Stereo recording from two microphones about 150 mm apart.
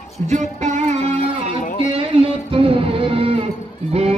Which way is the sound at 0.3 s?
50° right (ahead or behind).